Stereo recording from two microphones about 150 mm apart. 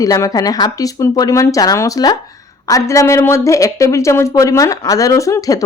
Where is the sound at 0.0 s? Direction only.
20° left (ahead or behind).